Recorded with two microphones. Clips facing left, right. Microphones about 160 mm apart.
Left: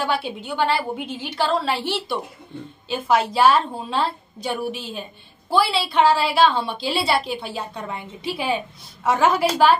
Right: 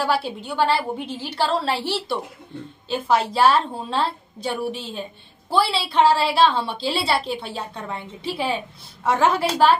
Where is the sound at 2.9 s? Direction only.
30° right (ahead or behind).